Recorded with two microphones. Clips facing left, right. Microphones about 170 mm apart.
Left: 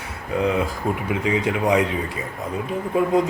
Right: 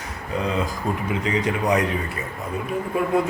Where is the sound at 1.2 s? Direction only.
10° left (ahead or behind).